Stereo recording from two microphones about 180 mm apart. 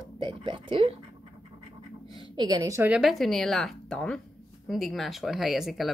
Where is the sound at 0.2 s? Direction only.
30° right (ahead or behind).